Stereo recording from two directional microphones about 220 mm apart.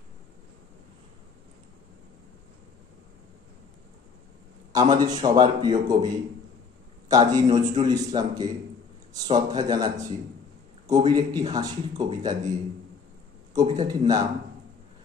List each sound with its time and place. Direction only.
4.9 s a man's voice: 20° right (ahead or behind)
13.6 s a man's voice: 20° right (ahead or behind)